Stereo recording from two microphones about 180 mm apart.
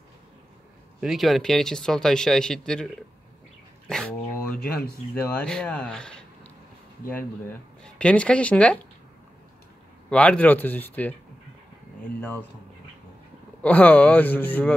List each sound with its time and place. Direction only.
1.0 s speech: centre (ahead or behind)
4.5 s speech: 55° left (ahead or behind)
5.1 s speech: 10° left (ahead or behind)
7.8 s speech: 5° left (ahead or behind)
10.0 s speech: 5° left (ahead or behind)
12.2 s speech: 10° left (ahead or behind)
13.6 s speech: 10° left (ahead or behind)